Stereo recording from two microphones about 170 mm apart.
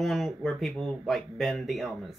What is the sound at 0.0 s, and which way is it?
Speech, centre (ahead or behind).